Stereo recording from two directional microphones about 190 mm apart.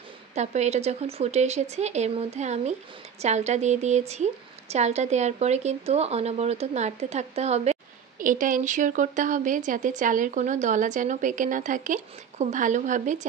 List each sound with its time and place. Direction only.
0.3 s a woman's voice: 35° right (ahead or behind)